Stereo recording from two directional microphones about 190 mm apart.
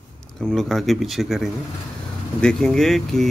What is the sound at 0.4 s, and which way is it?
A man's voice, 5° left (ahead or behind).